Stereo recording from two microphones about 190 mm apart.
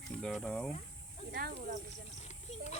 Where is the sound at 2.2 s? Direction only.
35° left (ahead or behind).